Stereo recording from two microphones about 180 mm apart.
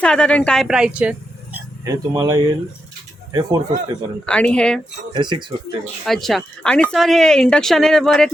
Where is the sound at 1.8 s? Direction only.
20° right (ahead or behind).